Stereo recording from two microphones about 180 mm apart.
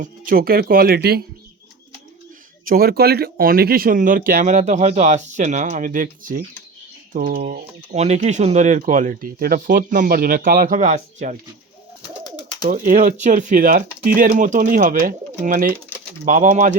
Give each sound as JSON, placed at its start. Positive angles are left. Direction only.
{"t": 0.0, "sound": "speech", "side_deg": -50}
{"t": 2.6, "sound": "speech", "side_deg": -55}
{"t": 7.9, "sound": "speech", "side_deg": -40}
{"t": 12.2, "sound": "bird", "side_deg": 25}
{"t": 12.7, "sound": "speech", "side_deg": -45}